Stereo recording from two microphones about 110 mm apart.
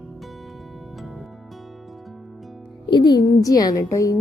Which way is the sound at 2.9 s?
40° left (ahead or behind).